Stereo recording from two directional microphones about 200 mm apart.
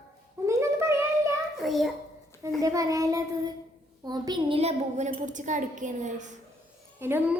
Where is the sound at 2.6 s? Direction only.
15° right (ahead or behind); by 6.3 s 40° right (ahead or behind).